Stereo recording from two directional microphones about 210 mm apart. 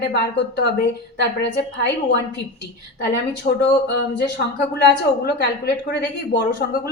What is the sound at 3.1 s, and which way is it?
A woman's voice, 55° left (ahead or behind).